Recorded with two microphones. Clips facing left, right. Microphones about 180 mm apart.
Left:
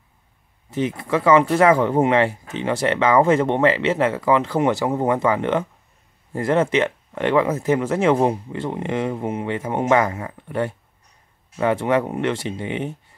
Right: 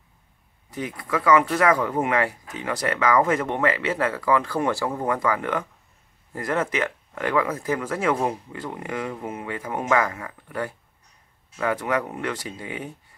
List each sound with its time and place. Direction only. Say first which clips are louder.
0.7 s speech: left 7 dB; 25° left (ahead or behind)